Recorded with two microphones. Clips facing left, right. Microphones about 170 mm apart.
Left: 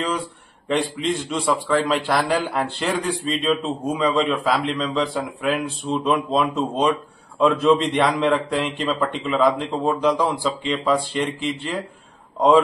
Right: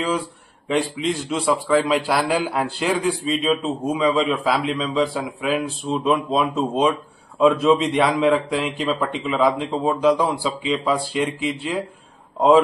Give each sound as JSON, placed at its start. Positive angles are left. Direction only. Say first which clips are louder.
{"t": 1.3, "sound": "a man's voice", "louder": "right 3 dB", "side_deg": -5}